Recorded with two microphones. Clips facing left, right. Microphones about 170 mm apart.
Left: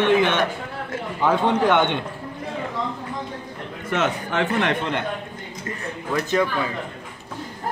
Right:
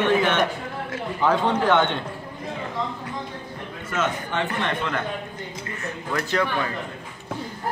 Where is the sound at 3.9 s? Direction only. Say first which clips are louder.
Left 3 dB; 80° left.